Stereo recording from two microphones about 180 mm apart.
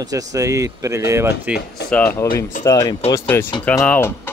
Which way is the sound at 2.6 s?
20° left (ahead or behind).